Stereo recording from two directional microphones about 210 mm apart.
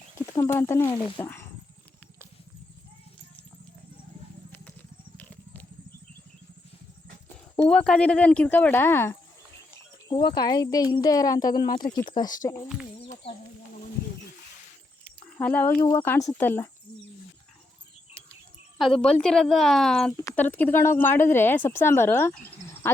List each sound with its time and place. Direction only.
0.3 s speech: 10° left (ahead or behind)
5.1 s a sound: 10° left (ahead or behind)
7.5 s speech: 5° left (ahead or behind); by 12.3 s 20° left (ahead or behind)
13.0 s a sound: 25° left (ahead or behind)
15.2 s speech: 5° left (ahead or behind)
18.9 s a woman's voice: 5° left (ahead or behind)